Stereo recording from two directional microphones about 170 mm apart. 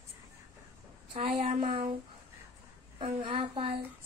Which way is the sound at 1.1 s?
35° right (ahead or behind).